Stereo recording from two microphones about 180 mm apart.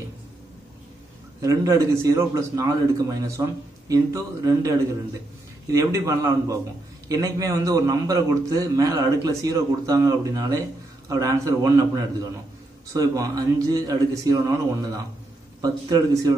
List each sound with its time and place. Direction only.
1.4 s a man's voice: 20° right (ahead or behind)